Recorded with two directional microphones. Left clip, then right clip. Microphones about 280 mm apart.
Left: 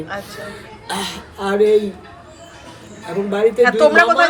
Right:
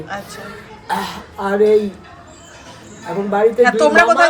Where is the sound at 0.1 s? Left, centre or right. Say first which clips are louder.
Right 1 dB; centre.